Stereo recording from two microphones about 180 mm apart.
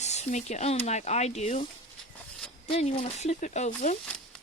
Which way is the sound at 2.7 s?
35° left (ahead or behind).